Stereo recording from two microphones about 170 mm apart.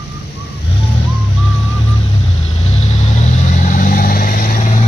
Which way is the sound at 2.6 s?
40° left (ahead or behind).